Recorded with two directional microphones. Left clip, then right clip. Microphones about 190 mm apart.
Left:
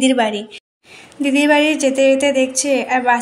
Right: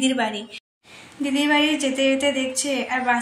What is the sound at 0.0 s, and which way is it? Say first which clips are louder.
A woman's voice: left 7 dB; 30° left (ahead or behind).